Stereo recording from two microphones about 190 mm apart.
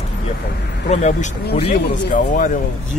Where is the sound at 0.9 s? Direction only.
40° left (ahead or behind).